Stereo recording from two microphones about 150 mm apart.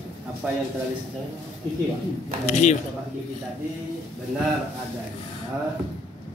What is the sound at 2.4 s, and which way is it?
Speech, 50° left (ahead or behind).